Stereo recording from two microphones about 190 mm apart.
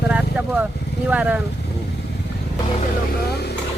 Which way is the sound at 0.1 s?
5° right (ahead or behind).